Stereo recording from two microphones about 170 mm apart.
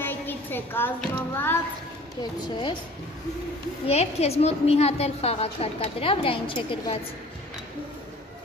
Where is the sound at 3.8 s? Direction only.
40° left (ahead or behind).